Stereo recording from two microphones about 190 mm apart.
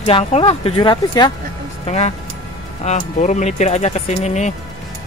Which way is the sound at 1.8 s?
35° left (ahead or behind).